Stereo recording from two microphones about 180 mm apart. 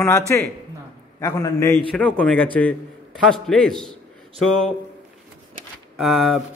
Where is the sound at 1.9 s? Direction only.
5° left (ahead or behind).